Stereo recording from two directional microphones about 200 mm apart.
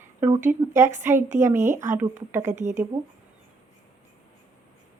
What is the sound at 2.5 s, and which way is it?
Speech, 35° right (ahead or behind).